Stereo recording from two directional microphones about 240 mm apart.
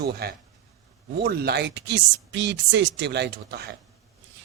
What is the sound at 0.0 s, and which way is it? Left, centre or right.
Speech, right.